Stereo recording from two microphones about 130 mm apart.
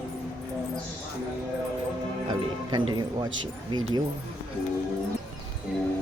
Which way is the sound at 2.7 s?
35° right (ahead or behind).